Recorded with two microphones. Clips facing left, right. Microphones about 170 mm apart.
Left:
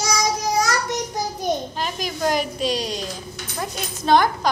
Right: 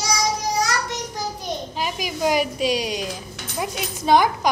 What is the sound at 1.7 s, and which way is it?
A woman's voice, 10° right (ahead or behind).